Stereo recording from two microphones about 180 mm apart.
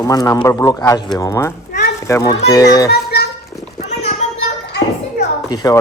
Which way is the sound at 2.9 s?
60° left (ahead or behind).